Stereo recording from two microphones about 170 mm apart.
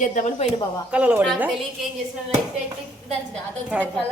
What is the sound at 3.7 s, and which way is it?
Speech, 5° right (ahead or behind).